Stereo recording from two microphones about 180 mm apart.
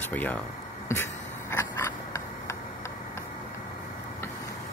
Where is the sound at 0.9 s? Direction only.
15° left (ahead or behind).